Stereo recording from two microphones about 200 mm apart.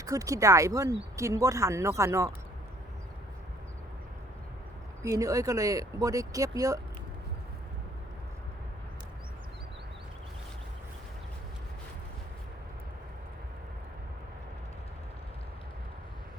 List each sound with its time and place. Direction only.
0.0 s speech: 15° right (ahead or behind)
5.0 s speech: 15° right (ahead or behind)